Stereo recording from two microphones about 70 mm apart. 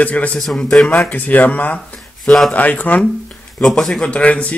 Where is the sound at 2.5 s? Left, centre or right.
Left.